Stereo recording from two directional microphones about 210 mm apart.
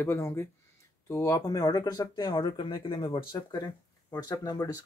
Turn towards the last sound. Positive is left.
turn(degrees=20)  # may be behind; listen again after turning